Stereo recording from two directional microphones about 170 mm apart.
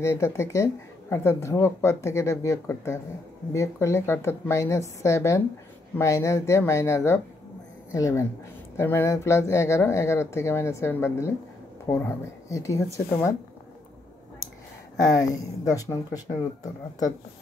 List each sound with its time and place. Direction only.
0.0 s speech: 15° left (ahead or behind)
15.6 s speech: 20° left (ahead or behind)